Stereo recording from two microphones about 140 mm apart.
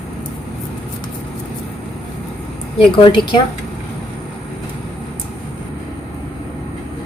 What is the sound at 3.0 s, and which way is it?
Speech, 30° left (ahead or behind).